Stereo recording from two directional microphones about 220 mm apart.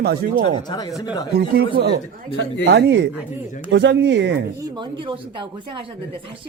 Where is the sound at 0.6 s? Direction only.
20° left (ahead or behind).